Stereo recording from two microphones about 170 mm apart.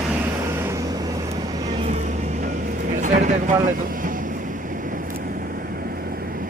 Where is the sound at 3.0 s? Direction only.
50° right (ahead or behind).